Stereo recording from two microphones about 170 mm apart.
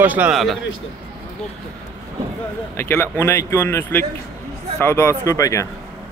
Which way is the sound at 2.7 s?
15° left (ahead or behind).